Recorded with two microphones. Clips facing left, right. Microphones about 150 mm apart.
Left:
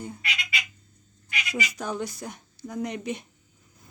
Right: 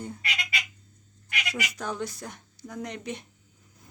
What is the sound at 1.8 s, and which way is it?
Speech, 10° left (ahead or behind).